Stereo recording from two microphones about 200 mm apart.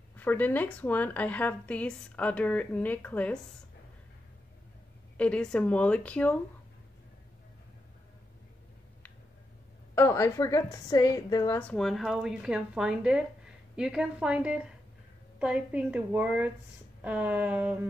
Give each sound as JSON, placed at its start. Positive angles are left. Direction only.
{"t": 0.1, "sound": "speech", "side_deg": 10}
{"t": 5.1, "sound": "speech", "side_deg": 5}
{"t": 9.9, "sound": "speech", "side_deg": 15}
{"t": 11.6, "sound": "speech", "side_deg": 0}